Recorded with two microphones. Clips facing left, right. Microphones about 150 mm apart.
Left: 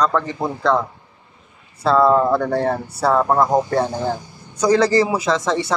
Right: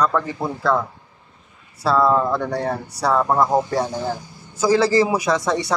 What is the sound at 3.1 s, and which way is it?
Speech, 10° left (ahead or behind).